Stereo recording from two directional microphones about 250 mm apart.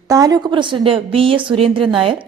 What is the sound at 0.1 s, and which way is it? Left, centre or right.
A woman's voice, centre.